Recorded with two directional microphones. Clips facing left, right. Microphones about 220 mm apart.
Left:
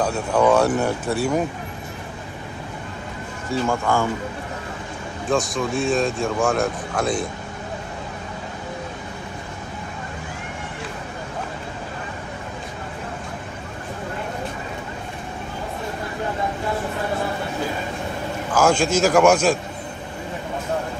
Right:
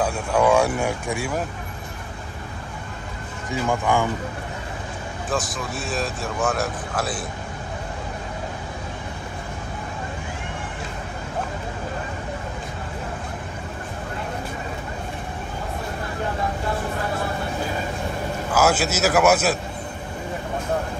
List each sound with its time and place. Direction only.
0.0 s speech: 10° right (ahead or behind)
3.4 s speech: 15° right (ahead or behind)
5.3 s speech: centre (ahead or behind)
18.5 s speech: 5° right (ahead or behind)